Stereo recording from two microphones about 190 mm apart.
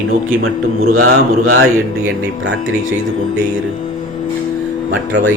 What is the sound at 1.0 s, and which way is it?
Speech, 90° right.